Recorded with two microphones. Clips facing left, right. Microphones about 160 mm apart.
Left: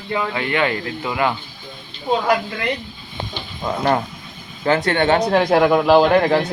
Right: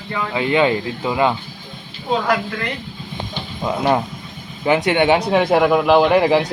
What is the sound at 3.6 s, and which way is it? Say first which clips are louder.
Speech: right 1 dB; 5° right (ahead or behind).